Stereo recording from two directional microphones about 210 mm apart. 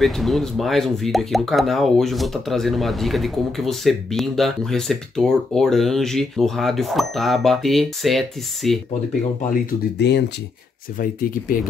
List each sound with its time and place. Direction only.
0.0 s speech: centre (ahead or behind)
9.5 s speech: 55° left (ahead or behind)
11.0 s speech: 40° left (ahead or behind)